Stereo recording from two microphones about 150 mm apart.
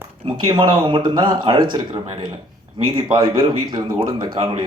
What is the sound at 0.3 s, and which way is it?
Speech, 30° right (ahead or behind).